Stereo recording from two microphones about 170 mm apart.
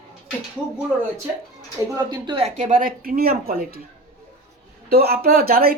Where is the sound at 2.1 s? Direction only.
25° right (ahead or behind).